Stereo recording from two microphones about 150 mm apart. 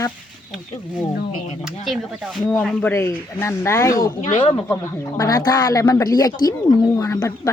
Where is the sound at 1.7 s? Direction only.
Centre (ahead or behind); by 4.1 s 20° left (ahead or behind).